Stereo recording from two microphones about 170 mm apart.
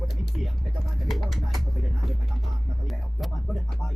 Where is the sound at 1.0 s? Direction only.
Centre (ahead or behind).